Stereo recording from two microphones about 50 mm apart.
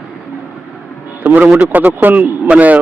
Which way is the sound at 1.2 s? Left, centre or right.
Right.